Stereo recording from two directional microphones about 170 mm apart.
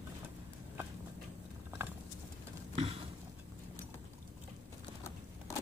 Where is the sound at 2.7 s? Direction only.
35° right (ahead or behind).